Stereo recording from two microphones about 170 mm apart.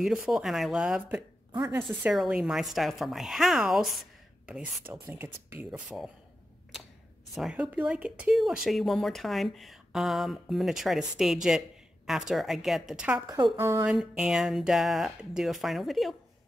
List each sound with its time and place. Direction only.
0.0 s speech: 5° right (ahead or behind)
1.5 s a woman's voice: 25° right (ahead or behind)
2.0 s speech: 5° right (ahead or behind)
7.3 s speech: centre (ahead or behind)
13.9 s speech: 5° right (ahead or behind)